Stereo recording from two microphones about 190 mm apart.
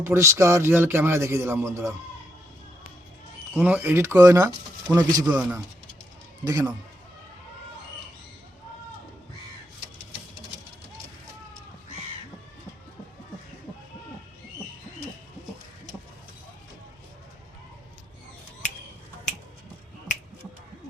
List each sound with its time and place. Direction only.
0.0 s speech: 15° right (ahead or behind)
3.5 s speech: 10° right (ahead or behind)
5.4 s speech: 10° right (ahead or behind)